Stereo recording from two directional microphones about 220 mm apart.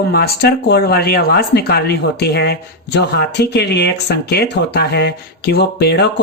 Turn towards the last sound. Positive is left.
turn(degrees=50)  # may be behind; listen again after turning